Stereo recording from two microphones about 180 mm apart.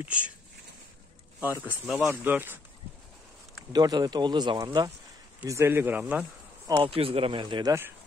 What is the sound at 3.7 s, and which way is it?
A man's voice, 20° right (ahead or behind).